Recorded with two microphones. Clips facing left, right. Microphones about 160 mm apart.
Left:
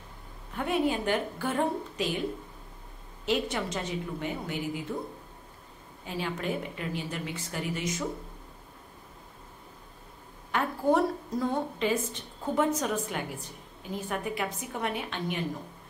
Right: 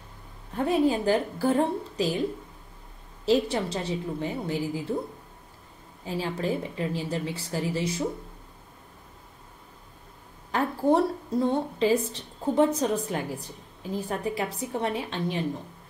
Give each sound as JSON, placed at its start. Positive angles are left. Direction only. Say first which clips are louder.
{"t": 0.6, "sound": "a woman's voice", "louder": "right 4 dB", "side_deg": -35}
{"t": 3.3, "sound": "a woman's voice", "louder": "right 5 dB", "side_deg": -35}
{"t": 6.0, "sound": "a woman's voice", "louder": "right 4 dB", "side_deg": -35}
{"t": 10.5, "sound": "a woman's voice", "louder": "right 3 dB", "side_deg": -35}